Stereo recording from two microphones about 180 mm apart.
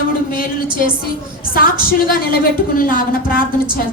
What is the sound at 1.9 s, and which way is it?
A woman's voice, 55° left (ahead or behind).